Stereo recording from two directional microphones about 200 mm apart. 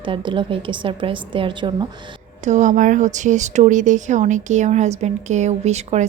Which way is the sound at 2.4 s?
35° right (ahead or behind).